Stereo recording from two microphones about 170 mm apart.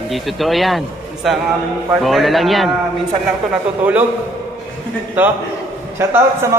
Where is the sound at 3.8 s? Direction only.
10° right (ahead or behind).